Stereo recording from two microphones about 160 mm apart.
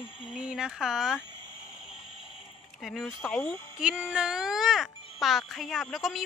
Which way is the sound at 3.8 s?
5° right (ahead or behind).